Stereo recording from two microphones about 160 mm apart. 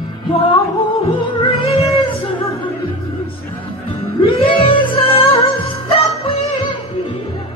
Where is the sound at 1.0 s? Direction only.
35° left (ahead or behind).